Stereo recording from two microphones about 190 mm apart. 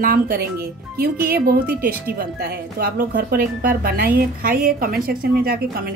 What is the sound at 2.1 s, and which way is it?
A woman's voice, 55° right (ahead or behind).